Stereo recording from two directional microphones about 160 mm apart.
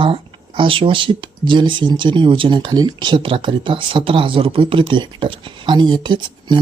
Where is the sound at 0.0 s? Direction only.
30° right (ahead or behind).